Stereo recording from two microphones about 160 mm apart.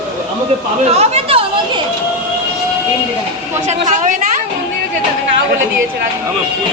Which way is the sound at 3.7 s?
50° right (ahead or behind).